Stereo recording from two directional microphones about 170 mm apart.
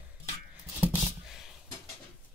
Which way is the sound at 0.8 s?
5° right (ahead or behind).